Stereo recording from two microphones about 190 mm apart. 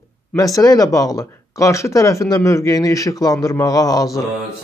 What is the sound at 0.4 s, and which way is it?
Speech, 20° left (ahead or behind).